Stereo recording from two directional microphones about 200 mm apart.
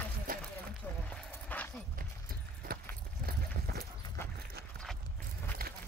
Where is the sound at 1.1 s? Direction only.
5° left (ahead or behind).